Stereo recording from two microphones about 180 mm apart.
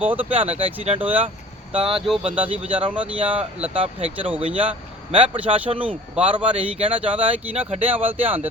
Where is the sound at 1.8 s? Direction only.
30° right (ahead or behind).